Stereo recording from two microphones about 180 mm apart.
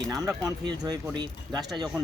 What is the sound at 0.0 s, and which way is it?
Speech, 20° right (ahead or behind).